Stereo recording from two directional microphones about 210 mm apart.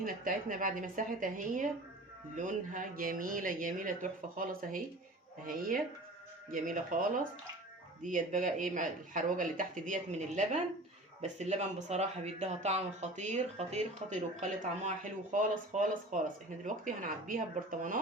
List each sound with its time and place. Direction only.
0.0 s speech: 40° right (ahead or behind)